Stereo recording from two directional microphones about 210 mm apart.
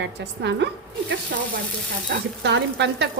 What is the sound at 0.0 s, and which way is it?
Frying, 55° right (ahead or behind).